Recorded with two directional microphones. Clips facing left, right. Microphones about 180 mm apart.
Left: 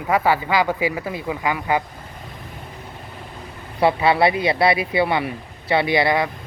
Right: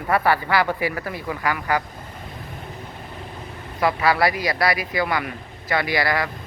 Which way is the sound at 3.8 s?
25° left (ahead or behind).